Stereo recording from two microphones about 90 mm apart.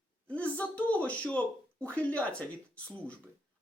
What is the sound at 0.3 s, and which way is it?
Speech, 15° left (ahead or behind).